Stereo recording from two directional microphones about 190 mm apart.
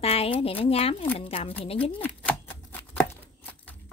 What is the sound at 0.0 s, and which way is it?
Speech, 30° left (ahead or behind).